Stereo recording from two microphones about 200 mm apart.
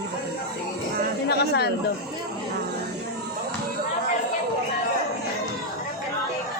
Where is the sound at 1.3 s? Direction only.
55° left (ahead or behind).